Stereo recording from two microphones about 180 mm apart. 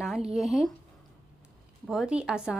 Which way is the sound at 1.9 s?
5° right (ahead or behind).